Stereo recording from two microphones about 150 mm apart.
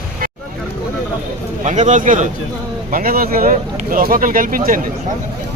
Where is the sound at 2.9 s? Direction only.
70° right (ahead or behind).